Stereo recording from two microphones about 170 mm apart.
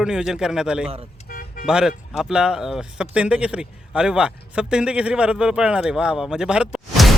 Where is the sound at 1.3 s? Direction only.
55° left (ahead or behind).